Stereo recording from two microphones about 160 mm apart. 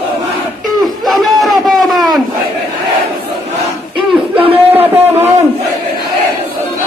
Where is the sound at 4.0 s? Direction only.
35° right (ahead or behind).